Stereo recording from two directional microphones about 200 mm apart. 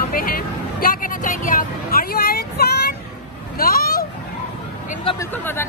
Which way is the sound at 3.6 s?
50° left (ahead or behind).